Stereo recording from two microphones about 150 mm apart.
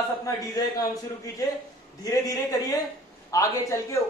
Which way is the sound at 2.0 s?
20° left (ahead or behind).